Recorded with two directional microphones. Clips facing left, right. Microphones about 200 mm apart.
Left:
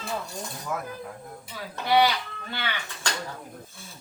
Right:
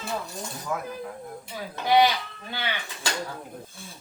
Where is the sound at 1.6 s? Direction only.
15° right (ahead or behind).